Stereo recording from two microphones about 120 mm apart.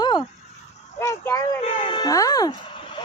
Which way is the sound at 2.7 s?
45° left (ahead or behind).